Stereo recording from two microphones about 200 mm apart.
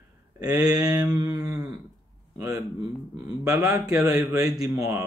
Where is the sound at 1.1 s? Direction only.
20° right (ahead or behind).